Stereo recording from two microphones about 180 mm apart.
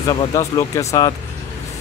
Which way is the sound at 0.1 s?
25° left (ahead or behind).